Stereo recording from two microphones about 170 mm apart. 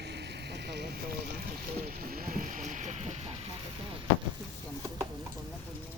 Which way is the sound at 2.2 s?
50° right (ahead or behind).